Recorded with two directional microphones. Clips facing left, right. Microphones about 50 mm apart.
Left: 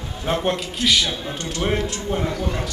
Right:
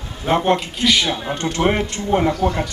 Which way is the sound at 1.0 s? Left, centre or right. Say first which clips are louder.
Right 5 dB; right.